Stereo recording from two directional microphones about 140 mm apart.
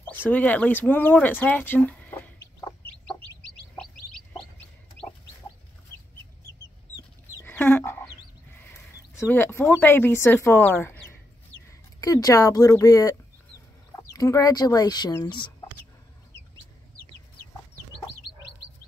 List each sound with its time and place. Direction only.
0.1 s speech: 15° left (ahead or behind)
3.7 s chicken: 5° left (ahead or behind)
7.4 s frog: 15° left (ahead or behind)
8.6 s speech: 15° left (ahead or behind)
14.1 s speech: 25° left (ahead or behind)